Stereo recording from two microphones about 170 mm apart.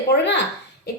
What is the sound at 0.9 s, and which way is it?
Beatboxing, 70° left (ahead or behind).